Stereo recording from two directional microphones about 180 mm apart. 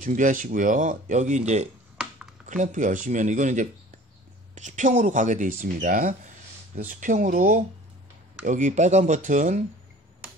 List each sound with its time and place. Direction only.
0.0 s speech: 45° right (ahead or behind)